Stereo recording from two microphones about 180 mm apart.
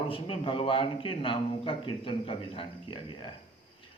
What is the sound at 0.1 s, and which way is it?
A man's voice, 30° left (ahead or behind).